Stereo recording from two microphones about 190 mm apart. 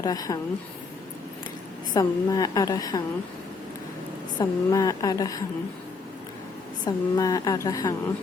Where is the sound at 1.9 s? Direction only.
20° left (ahead or behind).